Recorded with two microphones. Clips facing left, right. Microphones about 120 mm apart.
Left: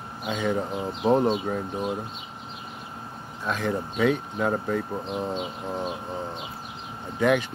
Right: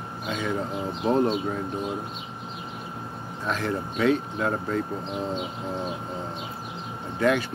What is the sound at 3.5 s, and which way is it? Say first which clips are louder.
Speech: left 2 dB; 15° left (ahead or behind).